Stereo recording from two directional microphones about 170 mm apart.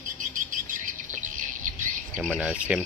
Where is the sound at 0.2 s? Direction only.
50° right (ahead or behind).